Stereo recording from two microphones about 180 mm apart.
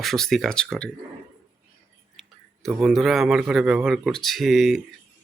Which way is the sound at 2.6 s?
Centre (ahead or behind).